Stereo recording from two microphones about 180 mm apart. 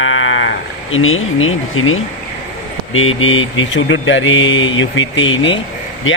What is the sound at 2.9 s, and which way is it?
Mantra, 90° left.